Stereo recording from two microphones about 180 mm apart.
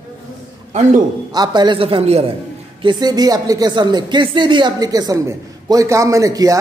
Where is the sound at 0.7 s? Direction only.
40° right (ahead or behind).